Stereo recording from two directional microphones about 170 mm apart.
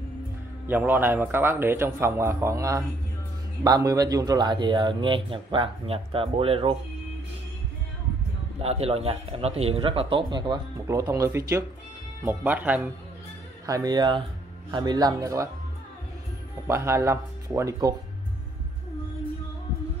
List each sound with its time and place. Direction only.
0.7 s a man's voice: 10° right (ahead or behind); by 6.8 s 35° right (ahead or behind)
8.5 s a man's voice: 35° right (ahead or behind); by 12.9 s 10° right (ahead or behind)
13.7 s speech: 20° right (ahead or behind)
16.6 s a man's voice: 15° right (ahead or behind)